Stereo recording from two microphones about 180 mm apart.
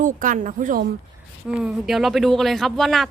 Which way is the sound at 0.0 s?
45° right (ahead or behind).